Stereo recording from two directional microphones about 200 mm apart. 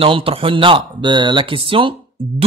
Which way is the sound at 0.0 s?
30° right (ahead or behind).